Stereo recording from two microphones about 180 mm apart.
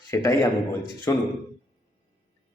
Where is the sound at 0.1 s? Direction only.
15° left (ahead or behind).